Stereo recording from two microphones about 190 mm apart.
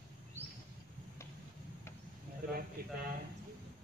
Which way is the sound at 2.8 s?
50° right (ahead or behind).